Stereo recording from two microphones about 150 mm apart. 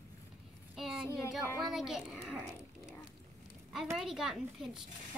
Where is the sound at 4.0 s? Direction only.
5° right (ahead or behind).